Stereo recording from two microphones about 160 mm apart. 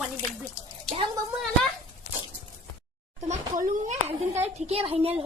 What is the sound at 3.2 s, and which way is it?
A woman's voice, 50° right (ahead or behind).